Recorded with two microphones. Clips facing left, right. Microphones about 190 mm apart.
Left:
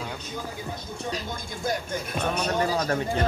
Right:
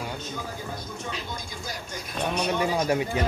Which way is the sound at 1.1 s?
50° left (ahead or behind).